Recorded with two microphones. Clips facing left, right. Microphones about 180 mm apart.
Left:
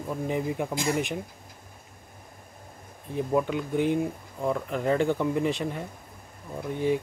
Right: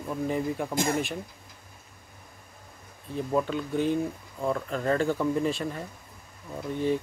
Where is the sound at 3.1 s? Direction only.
15° left (ahead or behind).